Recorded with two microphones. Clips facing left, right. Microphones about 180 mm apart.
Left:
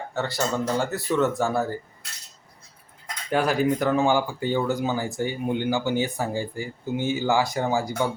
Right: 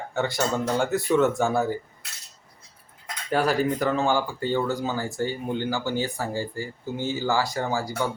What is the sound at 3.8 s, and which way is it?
Speech, 15° left (ahead or behind).